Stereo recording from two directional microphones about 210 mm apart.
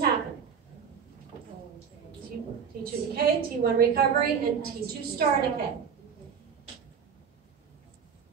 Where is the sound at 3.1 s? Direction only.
45° right (ahead or behind).